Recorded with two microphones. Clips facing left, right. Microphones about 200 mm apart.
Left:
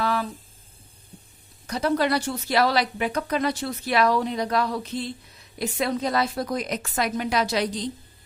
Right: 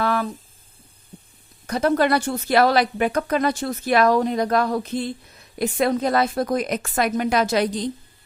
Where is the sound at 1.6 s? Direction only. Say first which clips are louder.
Right 4 dB; 55° right (ahead or behind).